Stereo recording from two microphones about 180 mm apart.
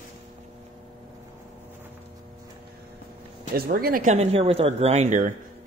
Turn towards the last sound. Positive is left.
turn(degrees=-45)  # may be behind; listen again after turning